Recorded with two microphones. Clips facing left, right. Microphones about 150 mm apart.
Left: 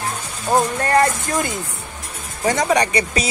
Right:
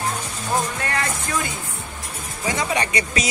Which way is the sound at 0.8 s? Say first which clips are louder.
Left 9 dB; 40° left (ahead or behind).